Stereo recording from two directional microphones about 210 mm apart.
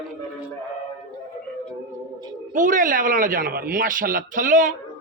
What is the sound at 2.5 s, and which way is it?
Speech, 40° right (ahead or behind).